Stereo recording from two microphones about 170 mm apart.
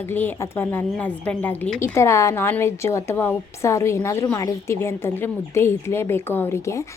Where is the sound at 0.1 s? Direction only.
10° left (ahead or behind).